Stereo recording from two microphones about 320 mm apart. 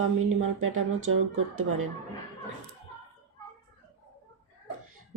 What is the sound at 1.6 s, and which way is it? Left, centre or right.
Speech, right.